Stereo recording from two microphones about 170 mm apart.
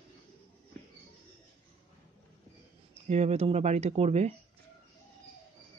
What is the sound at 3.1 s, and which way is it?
Speech, 40° right (ahead or behind).